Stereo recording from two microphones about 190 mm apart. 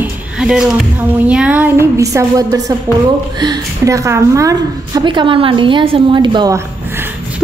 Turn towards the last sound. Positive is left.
turn(degrees=-20)  # may be behind; listen again after turning